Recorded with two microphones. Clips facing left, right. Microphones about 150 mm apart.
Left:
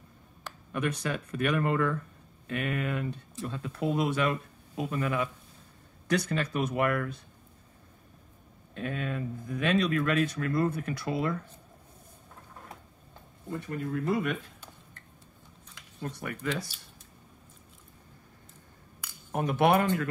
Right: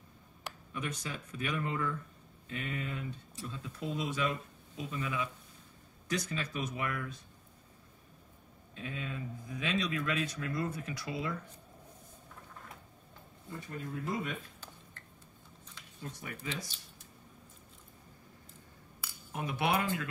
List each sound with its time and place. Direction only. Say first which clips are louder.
0.7 s speech: left 9 dB; 65° left (ahead or behind)
8.7 s speech: left 7 dB; 60° left (ahead or behind)
13.5 s speech: left 8 dB; 65° left (ahead or behind)
16.0 s speech: left 8 dB; 65° left (ahead or behind)
19.3 s speech: left 8 dB; 50° left (ahead or behind)